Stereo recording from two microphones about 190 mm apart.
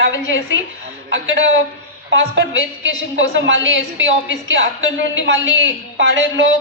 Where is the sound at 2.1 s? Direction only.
75° right (ahead or behind).